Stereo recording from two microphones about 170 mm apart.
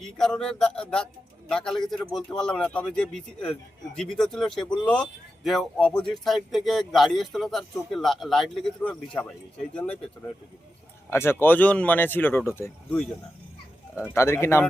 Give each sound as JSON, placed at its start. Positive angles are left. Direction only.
{"t": 0.0, "sound": "speech", "side_deg": 5}
{"t": 11.1, "sound": "speech", "side_deg": 15}
{"t": 14.1, "sound": "speech", "side_deg": 15}